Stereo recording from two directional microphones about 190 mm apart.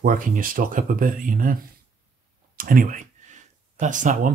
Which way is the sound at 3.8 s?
40° right (ahead or behind).